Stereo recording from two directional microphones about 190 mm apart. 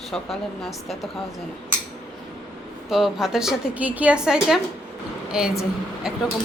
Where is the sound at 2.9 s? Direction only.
Centre (ahead or behind).